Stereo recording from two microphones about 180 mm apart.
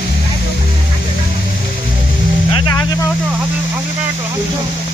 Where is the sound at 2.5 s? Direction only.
20° left (ahead or behind).